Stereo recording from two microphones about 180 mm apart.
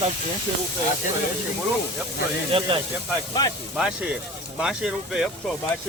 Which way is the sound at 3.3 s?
20° left (ahead or behind).